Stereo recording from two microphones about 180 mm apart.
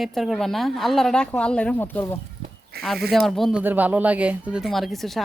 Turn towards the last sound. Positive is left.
turn(degrees=0)  # may be behind; listen again after turning